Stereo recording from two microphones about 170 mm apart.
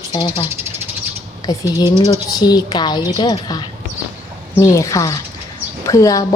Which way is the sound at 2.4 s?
25° left (ahead or behind).